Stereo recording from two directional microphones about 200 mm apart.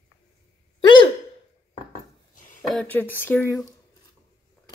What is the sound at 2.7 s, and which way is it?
Speech, 5° left (ahead or behind).